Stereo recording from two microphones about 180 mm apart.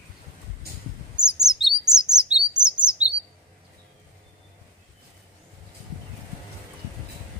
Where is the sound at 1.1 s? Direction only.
5° right (ahead or behind).